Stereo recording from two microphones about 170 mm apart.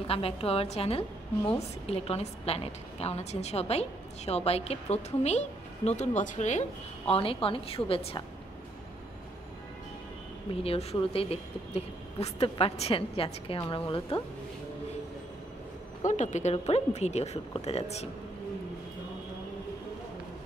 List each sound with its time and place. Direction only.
0.0 s a woman's voice: 35° left (ahead or behind)
7.1 s a woman's voice: 35° left (ahead or behind)
10.6 s a woman's voice: 35° left (ahead or behind)
16.1 s a woman's voice: 45° left (ahead or behind)